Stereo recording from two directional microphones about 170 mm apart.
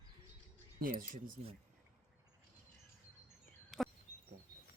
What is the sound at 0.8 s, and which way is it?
Speech, 50° right (ahead or behind).